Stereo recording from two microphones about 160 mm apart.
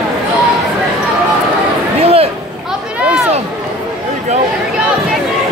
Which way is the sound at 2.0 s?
40° right (ahead or behind).